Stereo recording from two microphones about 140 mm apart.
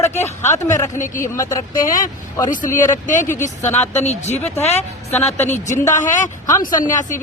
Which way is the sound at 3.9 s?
50° left (ahead or behind).